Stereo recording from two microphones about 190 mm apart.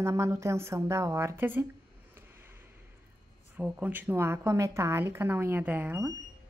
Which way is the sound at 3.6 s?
10° right (ahead or behind).